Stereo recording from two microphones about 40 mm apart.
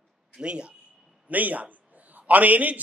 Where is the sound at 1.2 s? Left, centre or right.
Right.